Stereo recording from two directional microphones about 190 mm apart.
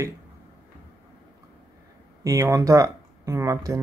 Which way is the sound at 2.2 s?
15° right (ahead or behind).